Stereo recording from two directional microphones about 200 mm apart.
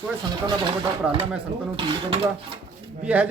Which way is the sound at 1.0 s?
5° right (ahead or behind).